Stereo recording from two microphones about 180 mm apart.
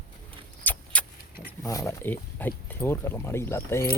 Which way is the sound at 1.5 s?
20° left (ahead or behind).